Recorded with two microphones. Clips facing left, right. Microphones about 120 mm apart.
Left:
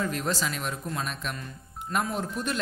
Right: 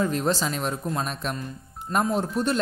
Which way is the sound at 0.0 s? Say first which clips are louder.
Right 5 dB; 30° right (ahead or behind).